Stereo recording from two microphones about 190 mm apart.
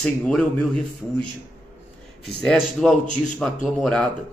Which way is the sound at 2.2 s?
5° left (ahead or behind).